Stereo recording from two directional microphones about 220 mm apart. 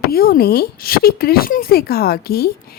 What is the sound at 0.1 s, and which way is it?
A woman's voice, 45° left (ahead or behind).